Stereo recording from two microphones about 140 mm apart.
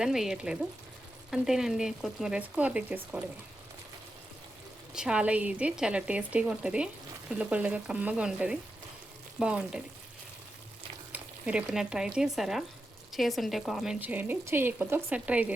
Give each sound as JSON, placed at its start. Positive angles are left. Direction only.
{"t": 0.0, "sound": "speech", "side_deg": -5}
{"t": 4.9, "sound": "speech", "side_deg": -5}
{"t": 11.1, "sound": "speech", "side_deg": -10}
{"t": 14.0, "sound": "speech", "side_deg": -10}